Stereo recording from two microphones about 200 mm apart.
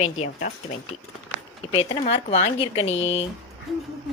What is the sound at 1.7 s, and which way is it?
Speech, 30° left (ahead or behind).